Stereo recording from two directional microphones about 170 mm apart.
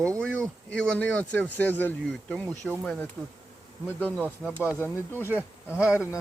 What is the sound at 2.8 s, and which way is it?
Speech, 5° left (ahead or behind).